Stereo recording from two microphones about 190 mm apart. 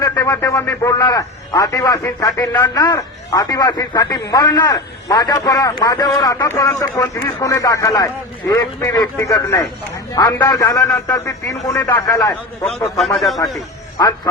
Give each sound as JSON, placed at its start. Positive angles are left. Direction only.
{"t": 0.0, "sound": "a man's voice", "side_deg": 15}
{"t": 13.1, "sound": "a man's voice", "side_deg": 0}